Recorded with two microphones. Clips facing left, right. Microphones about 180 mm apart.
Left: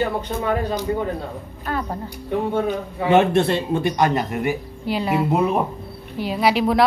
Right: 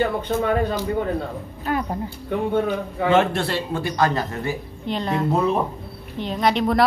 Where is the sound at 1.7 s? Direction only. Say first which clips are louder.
Right 2 dB; 15° right (ahead or behind).